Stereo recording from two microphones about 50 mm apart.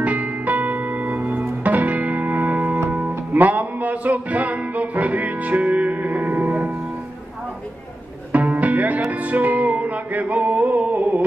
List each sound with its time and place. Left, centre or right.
0.0 s music: right
8.3 s music: right